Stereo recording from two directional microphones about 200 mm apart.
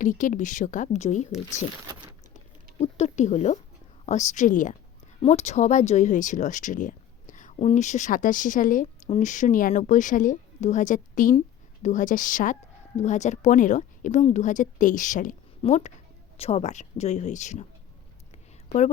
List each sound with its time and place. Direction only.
0.0 s speech: 40° left (ahead or behind)
2.8 s a woman's voice: 35° left (ahead or behind)